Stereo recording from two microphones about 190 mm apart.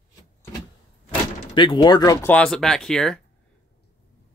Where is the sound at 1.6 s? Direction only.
25° left (ahead or behind).